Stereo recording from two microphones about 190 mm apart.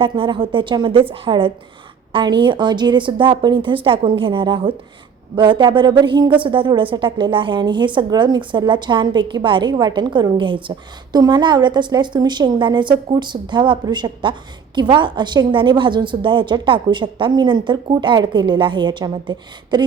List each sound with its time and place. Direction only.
0.0 s speech: 25° right (ahead or behind)